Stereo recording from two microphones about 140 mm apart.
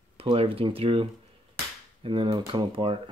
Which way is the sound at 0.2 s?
40° right (ahead or behind).